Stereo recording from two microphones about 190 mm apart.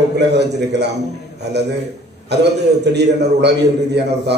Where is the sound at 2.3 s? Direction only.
60° right (ahead or behind).